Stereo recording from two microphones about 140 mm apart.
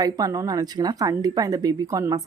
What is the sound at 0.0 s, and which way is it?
Speech, 25° right (ahead or behind).